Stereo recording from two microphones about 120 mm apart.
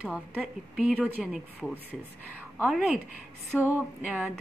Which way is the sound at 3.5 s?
15° left (ahead or behind).